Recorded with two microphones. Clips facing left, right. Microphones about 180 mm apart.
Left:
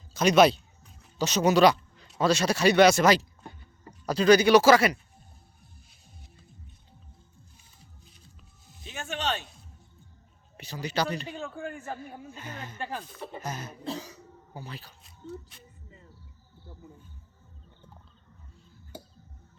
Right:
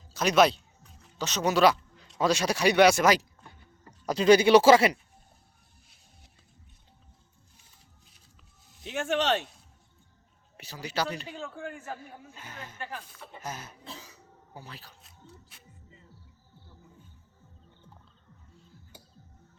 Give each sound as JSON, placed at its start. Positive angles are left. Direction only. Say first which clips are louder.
{"t": 0.1, "sound": "speech", "louder": "left 3 dB", "side_deg": -5}
{"t": 1.5, "sound": "speech", "louder": "even", "side_deg": -5}
{"t": 4.0, "sound": "speech", "louder": "even", "side_deg": -20}
{"t": 8.8, "sound": "speech", "louder": "right 6 dB", "side_deg": -80}
{"t": 10.6, "sound": "speech", "louder": "left 2 dB", "side_deg": -5}
{"t": 11.3, "sound": "speech", "louder": "left 2 dB", "side_deg": 5}
{"t": 11.9, "sound": "speech", "louder": "left 5 dB", "side_deg": -10}
{"t": 12.8, "sound": "speech", "louder": "left 5 dB", "side_deg": 30}
{"t": 13.4, "sound": "speech", "louder": "left 3 dB", "side_deg": -5}